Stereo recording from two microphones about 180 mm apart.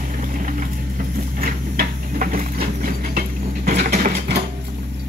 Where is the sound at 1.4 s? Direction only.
50° right (ahead or behind).